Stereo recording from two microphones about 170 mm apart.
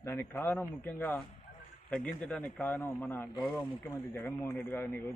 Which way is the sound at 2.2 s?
5° left (ahead or behind).